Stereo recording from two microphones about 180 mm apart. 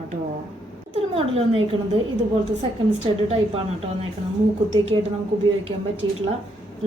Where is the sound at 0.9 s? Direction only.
35° right (ahead or behind).